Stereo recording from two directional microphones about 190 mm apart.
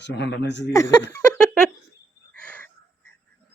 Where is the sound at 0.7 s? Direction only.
15° left (ahead or behind).